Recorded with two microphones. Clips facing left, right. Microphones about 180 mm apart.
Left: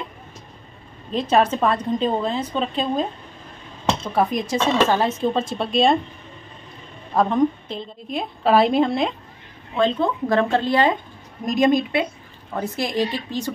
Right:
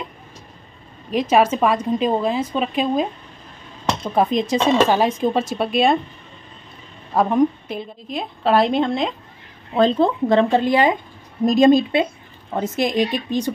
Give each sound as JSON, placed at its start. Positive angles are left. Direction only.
{"t": 1.1, "sound": "a woman's voice", "side_deg": -10}
{"t": 7.2, "sound": "a woman's voice", "side_deg": -10}
{"t": 8.1, "sound": "a woman's voice", "side_deg": 0}
{"t": 9.8, "sound": "a woman's voice", "side_deg": -35}
{"t": 10.3, "sound": "a woman's voice", "side_deg": -15}
{"t": 11.4, "sound": "speech", "side_deg": -30}